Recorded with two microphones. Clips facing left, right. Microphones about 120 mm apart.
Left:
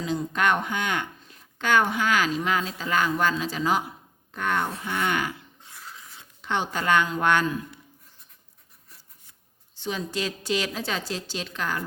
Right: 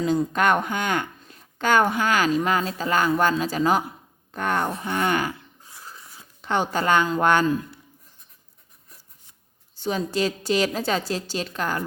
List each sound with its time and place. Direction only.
0.0 s a woman's voice: 40° right (ahead or behind)
6.4 s a woman's voice: 40° right (ahead or behind)
9.7 s a woman's voice: 40° right (ahead or behind)